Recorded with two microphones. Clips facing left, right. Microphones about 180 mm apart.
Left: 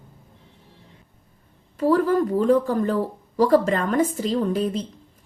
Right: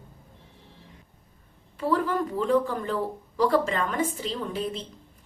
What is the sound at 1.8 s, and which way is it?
Speech, 40° left (ahead or behind).